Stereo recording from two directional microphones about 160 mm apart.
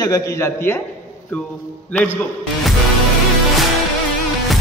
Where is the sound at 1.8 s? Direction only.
10° left (ahead or behind).